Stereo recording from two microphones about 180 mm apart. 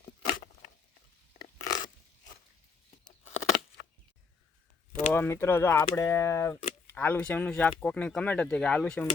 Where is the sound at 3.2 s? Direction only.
40° left (ahead or behind).